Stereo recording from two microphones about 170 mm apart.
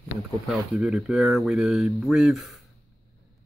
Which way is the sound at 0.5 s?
5° right (ahead or behind).